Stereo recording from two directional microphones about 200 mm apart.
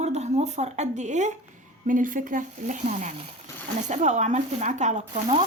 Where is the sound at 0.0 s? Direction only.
35° right (ahead or behind).